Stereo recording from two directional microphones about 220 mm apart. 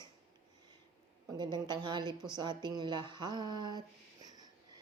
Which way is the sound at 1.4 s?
20° right (ahead or behind).